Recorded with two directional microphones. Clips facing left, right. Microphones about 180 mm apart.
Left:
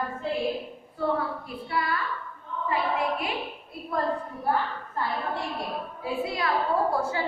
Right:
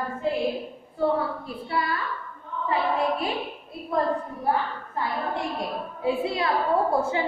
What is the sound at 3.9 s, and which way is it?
Speech, 25° right (ahead or behind).